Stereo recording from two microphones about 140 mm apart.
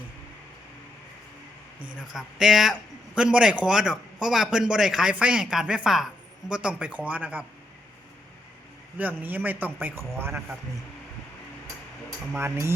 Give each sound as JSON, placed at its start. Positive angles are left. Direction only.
{"t": 2.1, "sound": "a man's voice", "side_deg": -5}
{"t": 9.0, "sound": "speech", "side_deg": -10}
{"t": 12.4, "sound": "speech", "side_deg": -20}